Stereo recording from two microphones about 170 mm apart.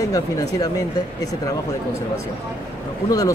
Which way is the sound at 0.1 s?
20° left (ahead or behind).